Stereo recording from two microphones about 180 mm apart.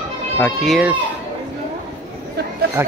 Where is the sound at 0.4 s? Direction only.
Centre (ahead or behind).